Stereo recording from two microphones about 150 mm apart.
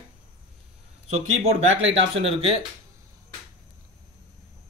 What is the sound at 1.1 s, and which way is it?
Speech, 45° right (ahead or behind).